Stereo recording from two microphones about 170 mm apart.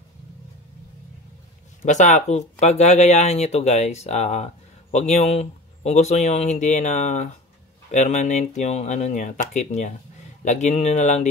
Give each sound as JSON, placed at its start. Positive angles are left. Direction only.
{"t": 1.8, "sound": "speech", "side_deg": 45}